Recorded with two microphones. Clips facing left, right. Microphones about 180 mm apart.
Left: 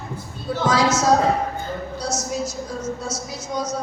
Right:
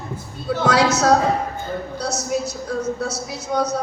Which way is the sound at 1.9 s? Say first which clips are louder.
Right 2 dB; 65° right (ahead or behind).